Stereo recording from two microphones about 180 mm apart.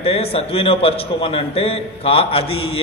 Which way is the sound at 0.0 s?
35° left (ahead or behind).